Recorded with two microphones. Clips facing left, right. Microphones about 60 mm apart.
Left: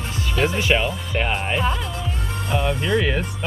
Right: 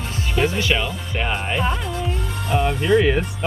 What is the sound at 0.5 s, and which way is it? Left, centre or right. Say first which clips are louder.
Speech: left 1 dB; centre.